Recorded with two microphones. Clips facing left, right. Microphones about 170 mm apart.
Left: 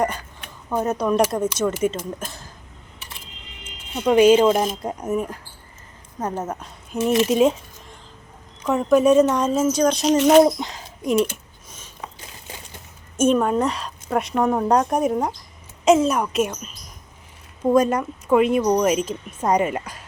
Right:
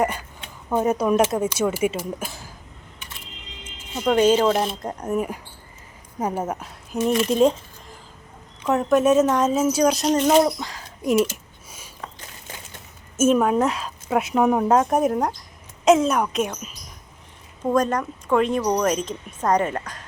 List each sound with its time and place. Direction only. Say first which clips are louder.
0.8 s speech: right 1 dB; 5° right (ahead or behind)
4.0 s speech: left 3 dB; 10° left (ahead or behind)
6.1 s speech: right 1 dB; 10° right (ahead or behind)
10.4 s speech: left 4 dB; 20° left (ahead or behind)
11.0 s speech: even; 5° right (ahead or behind)
13.1 s speech: even; 5° right (ahead or behind)